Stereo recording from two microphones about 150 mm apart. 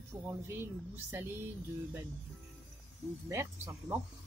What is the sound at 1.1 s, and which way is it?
Female singing, 15° right (ahead or behind).